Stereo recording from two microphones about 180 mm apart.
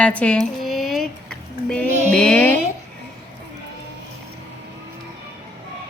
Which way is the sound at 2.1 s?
5° left (ahead or behind).